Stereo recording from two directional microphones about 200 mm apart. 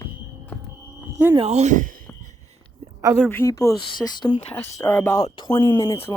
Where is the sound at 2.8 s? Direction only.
15° right (ahead or behind).